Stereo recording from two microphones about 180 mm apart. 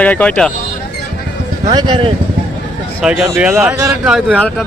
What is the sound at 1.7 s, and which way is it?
Speech, 25° right (ahead or behind).